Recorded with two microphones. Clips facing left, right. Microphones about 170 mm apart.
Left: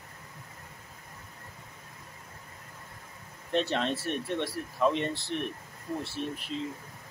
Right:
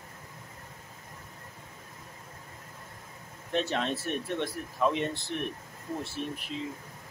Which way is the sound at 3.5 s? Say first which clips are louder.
Left 1 dB; 5° right (ahead or behind).